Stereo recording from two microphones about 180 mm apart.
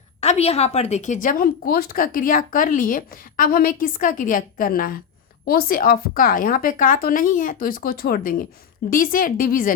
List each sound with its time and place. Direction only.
0.2 s a woman's voice: 35° left (ahead or behind); by 9.7 s 55° left (ahead or behind)